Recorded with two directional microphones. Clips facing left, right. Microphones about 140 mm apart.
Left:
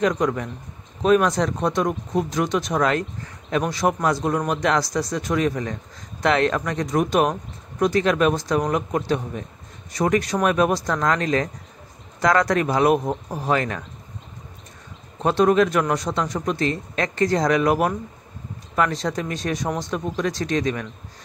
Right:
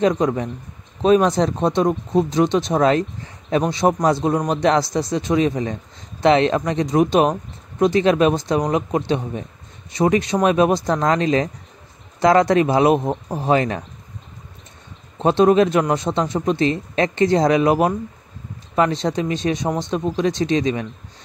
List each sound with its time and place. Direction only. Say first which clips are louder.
0.0 s speech: right 3 dB; 25° right (ahead or behind)
15.2 s speech: right 3 dB; 25° right (ahead or behind)